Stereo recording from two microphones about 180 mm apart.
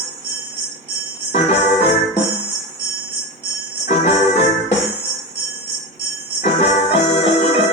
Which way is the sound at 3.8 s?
35° left (ahead or behind).